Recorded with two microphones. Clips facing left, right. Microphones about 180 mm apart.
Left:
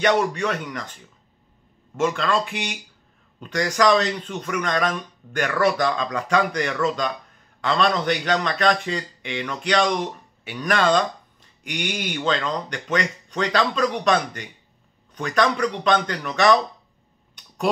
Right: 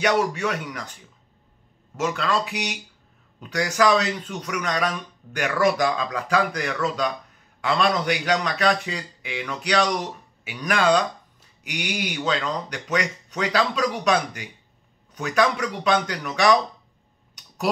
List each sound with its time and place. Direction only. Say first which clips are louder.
0.0 s speech: left 1 dB; 5° right (ahead or behind)
2.0 s a man's voice: left 2 dB; centre (ahead or behind)